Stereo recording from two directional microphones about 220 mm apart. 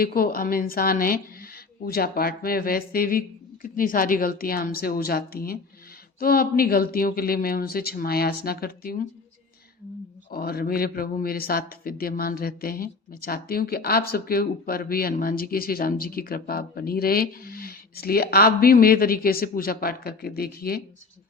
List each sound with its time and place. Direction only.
0.0 s a man's voice: 40° left (ahead or behind)
10.3 s a man's voice: 45° left (ahead or behind)